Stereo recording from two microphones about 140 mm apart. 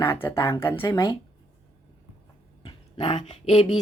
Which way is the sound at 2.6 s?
40° left (ahead or behind).